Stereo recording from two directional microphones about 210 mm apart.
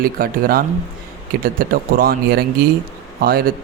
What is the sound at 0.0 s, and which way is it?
Speech, 45° right (ahead or behind).